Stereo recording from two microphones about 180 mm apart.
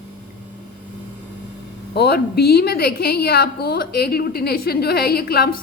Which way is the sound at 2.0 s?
65° left (ahead or behind).